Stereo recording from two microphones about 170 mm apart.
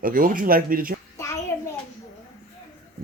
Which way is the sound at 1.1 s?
15° left (ahead or behind).